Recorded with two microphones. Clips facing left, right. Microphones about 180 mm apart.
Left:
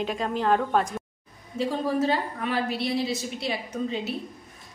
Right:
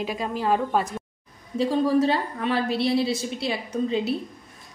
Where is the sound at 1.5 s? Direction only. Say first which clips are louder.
Right 5 dB; 30° right (ahead or behind).